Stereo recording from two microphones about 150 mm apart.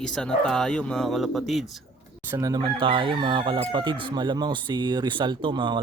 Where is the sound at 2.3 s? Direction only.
20° right (ahead or behind).